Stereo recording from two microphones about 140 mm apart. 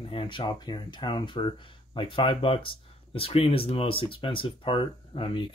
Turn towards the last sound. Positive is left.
turn(degrees=40)  # may be behind; listen again after turning